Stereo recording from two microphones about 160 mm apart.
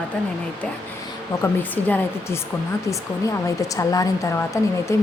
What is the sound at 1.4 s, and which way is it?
Speech, 10° left (ahead or behind).